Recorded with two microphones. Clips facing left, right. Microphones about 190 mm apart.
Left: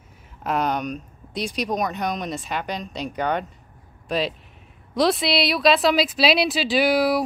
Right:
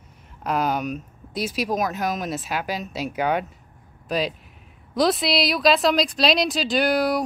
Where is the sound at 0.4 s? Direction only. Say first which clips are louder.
Even; centre (ahead or behind).